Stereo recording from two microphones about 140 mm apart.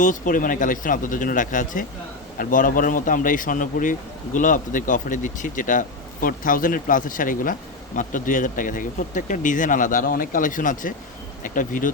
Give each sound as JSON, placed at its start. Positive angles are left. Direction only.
{"t": 0.0, "sound": "speech", "side_deg": 70}